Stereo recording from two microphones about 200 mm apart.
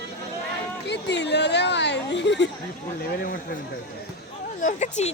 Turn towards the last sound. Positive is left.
turn(degrees=35)  # may be behind; listen again after turning